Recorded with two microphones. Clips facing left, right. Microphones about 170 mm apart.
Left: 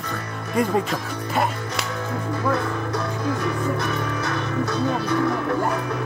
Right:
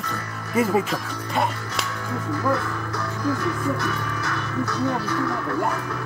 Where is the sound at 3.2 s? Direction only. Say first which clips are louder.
Right 2 dB; 20° left (ahead or behind).